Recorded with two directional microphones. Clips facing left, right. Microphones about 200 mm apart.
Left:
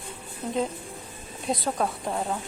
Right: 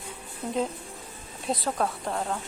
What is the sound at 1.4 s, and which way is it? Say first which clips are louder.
Speech: left 1 dB; centre (ahead or behind).